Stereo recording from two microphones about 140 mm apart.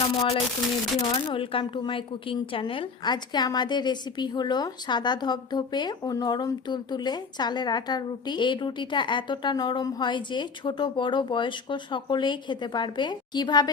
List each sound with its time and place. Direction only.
0.0 s a woman's voice: 40° left (ahead or behind)